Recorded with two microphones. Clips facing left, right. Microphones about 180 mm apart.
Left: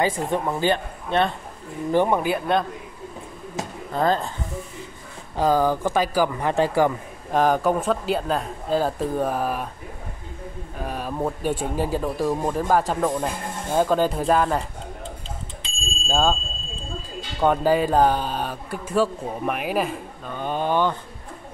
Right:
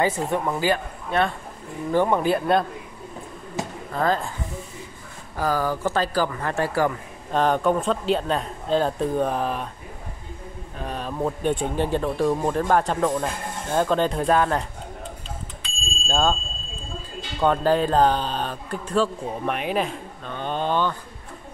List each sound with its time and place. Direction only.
0.1 s speech: 10° left (ahead or behind)
0.6 s speech: 25° left (ahead or behind)
1.9 s speech: 15° left (ahead or behind)
3.9 s speech: 25° left (ahead or behind)
5.3 s speech: 20° left (ahead or behind)
7.3 s speech: 5° left (ahead or behind)
10.8 s speech: 10° left (ahead or behind)
16.1 s speech: 10° left (ahead or behind)
17.4 s speech: 10° left (ahead or behind)